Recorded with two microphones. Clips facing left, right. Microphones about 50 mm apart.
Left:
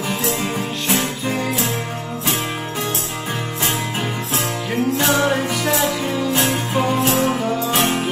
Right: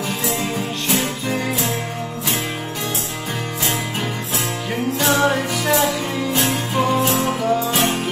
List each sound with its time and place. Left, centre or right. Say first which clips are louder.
0.4 s music: even; left
1.2 s music: left 1 dB; centre
4.9 s music: right 2 dB; centre
7.7 s music: left 1 dB; centre